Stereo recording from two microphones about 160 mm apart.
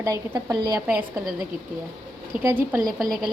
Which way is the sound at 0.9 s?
5° right (ahead or behind).